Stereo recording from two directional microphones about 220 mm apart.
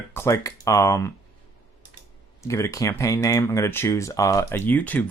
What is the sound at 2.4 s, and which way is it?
Speech, 15° left (ahead or behind).